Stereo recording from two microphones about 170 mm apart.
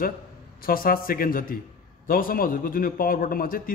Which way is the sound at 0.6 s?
60° left (ahead or behind).